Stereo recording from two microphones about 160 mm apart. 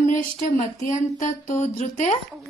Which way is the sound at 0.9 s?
50° left (ahead or behind).